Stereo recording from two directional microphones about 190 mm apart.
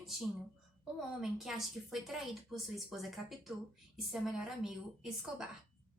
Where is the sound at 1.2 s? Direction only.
Centre (ahead or behind).